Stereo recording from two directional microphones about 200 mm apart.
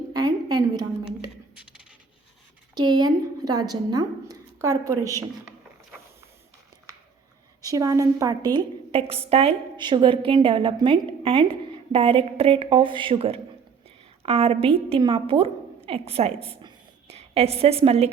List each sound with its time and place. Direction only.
0.1 s a sound: 20° right (ahead or behind)
2.7 s speech: 20° right (ahead or behind)
7.6 s a woman's voice: 15° right (ahead or behind)